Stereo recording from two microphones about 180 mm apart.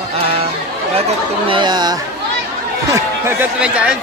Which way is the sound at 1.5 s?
25° right (ahead or behind).